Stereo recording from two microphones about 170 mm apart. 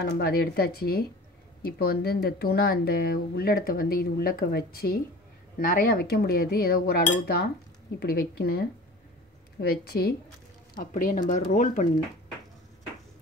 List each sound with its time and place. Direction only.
0.0 s speech: 75° left (ahead or behind)
10.7 s speech: 55° left (ahead or behind)